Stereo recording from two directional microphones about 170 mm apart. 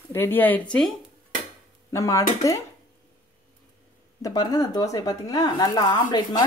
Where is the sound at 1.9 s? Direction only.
20° left (ahead or behind).